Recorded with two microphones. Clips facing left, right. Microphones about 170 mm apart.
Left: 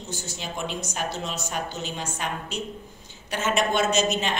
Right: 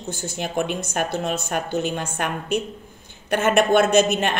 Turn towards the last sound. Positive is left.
turn(degrees=-55)  # may be behind; listen again after turning